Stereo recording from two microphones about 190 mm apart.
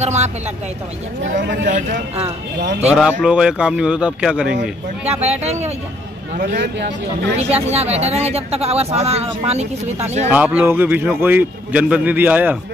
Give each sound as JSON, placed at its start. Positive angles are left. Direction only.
{"t": 0.0, "sound": "speech", "side_deg": -35}
{"t": 1.2, "sound": "a man's voice", "side_deg": -65}
{"t": 1.7, "sound": "speech", "side_deg": -40}
{"t": 3.2, "sound": "a man's voice", "side_deg": -5}
{"t": 5.0, "sound": "speech", "side_deg": -35}
{"t": 10.3, "sound": "a man's voice", "side_deg": -10}